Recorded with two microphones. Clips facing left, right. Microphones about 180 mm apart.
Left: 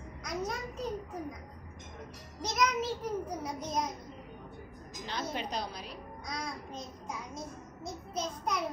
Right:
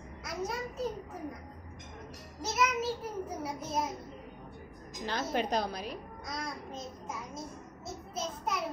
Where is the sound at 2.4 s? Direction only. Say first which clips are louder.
Even; 5° right (ahead or behind).